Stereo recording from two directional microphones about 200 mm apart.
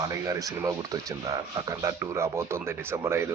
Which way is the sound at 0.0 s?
15° right (ahead or behind).